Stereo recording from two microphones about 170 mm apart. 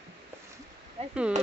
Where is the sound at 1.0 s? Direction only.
35° right (ahead or behind).